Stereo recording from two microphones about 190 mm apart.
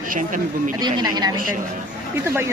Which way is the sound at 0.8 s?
20° right (ahead or behind).